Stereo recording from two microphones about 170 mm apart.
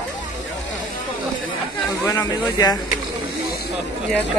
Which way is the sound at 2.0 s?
20° left (ahead or behind).